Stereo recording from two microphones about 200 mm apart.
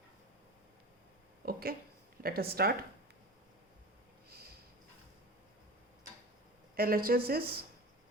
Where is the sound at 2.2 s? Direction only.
50° right (ahead or behind).